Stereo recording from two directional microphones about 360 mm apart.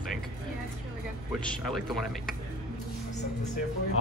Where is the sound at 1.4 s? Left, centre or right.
Centre.